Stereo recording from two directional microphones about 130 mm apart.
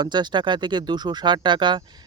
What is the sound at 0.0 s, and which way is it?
Speech, 35° right (ahead or behind).